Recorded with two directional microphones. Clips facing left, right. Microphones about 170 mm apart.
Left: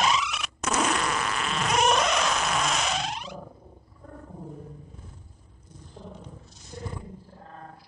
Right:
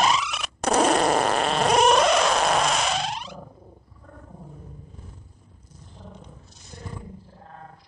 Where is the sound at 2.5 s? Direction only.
35° right (ahead or behind).